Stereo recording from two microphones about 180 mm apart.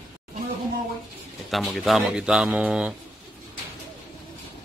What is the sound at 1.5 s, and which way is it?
A man's voice, centre (ahead or behind).